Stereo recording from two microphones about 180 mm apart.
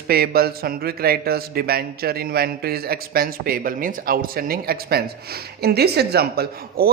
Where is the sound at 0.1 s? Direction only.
60° right (ahead or behind).